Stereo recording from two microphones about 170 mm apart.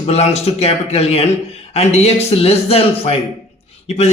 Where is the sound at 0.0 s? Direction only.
40° left (ahead or behind).